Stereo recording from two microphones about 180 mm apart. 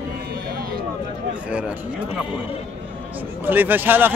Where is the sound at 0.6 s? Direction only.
55° right (ahead or behind).